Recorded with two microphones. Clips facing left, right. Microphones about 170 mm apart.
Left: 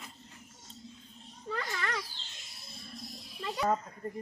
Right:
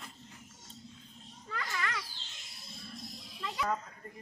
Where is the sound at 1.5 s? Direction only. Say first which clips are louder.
Left 2 dB; 35° left (ahead or behind).